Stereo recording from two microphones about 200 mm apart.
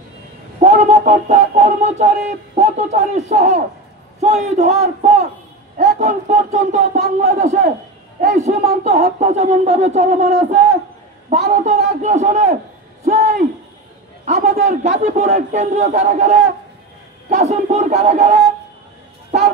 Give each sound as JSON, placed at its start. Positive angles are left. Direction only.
{"t": 0.6, "sound": "speech", "side_deg": -35}
{"t": 13.0, "sound": "hoot", "side_deg": -35}
{"t": 14.2, "sound": "speech", "side_deg": -35}